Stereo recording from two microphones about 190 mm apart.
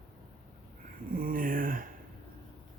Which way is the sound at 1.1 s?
45° right (ahead or behind).